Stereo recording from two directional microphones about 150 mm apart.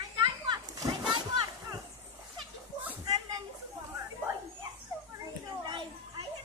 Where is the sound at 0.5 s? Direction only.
25° right (ahead or behind).